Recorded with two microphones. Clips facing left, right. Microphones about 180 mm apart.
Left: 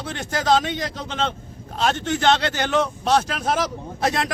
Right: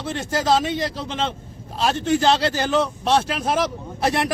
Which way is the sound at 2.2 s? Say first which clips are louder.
Left 3 dB; 30° right (ahead or behind).